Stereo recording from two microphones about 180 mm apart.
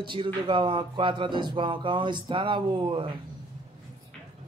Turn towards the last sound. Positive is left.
turn(degrees=-25)  # may be behind; listen again after turning